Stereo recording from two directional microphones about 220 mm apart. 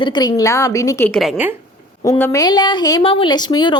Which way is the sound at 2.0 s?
10° left (ahead or behind).